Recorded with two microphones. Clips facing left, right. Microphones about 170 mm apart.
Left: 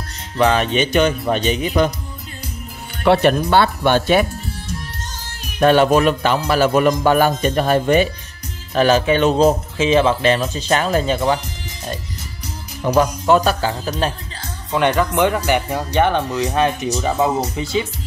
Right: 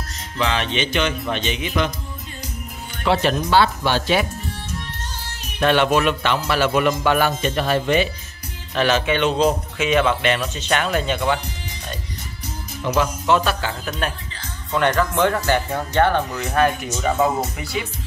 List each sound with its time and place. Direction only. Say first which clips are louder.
0.5 s speech: left 4 dB; 45° left (ahead or behind)
3.0 s speech: left 5 dB; 55° left (ahead or behind)
5.6 s speech: left 4 dB; 40° left (ahead or behind)
9.8 s speech: left 2 dB; 30° left (ahead or behind)
12.8 s speech: left 5 dB; 35° left (ahead or behind)
14.7 s speech: left 2 dB; 15° left (ahead or behind)